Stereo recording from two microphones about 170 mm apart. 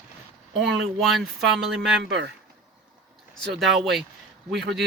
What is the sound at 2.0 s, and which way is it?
Speech, 90° right.